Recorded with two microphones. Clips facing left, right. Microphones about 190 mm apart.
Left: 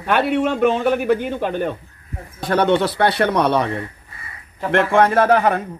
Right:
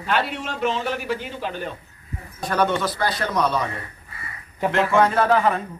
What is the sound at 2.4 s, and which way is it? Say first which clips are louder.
A man's voice: left 5 dB; 65° left (ahead or behind).